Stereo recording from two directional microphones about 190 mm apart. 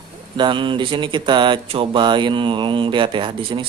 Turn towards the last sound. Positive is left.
turn(degrees=-25)  # may be behind; listen again after turning